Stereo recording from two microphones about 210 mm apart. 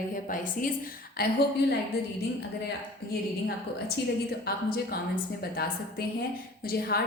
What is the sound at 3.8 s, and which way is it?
A woman's voice, 45° left (ahead or behind).